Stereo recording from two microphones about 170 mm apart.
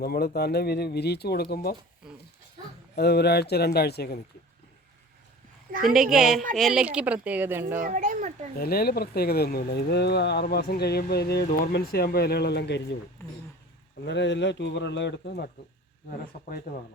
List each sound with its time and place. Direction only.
0.0 s speech: 65° left (ahead or behind)
2.9 s speech: 75° left (ahead or behind)
5.9 s a woman's voice: centre (ahead or behind)
7.8 s a child's voice: 50° right (ahead or behind)
8.5 s speech: 65° left (ahead or behind); by 13.0 s 85° left
13.2 s speech: 15° left (ahead or behind)
14.0 s speech: 90° left
16.0 s speech: 60° left (ahead or behind)